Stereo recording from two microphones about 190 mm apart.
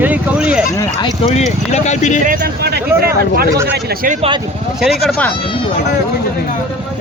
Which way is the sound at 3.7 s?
55° right (ahead or behind).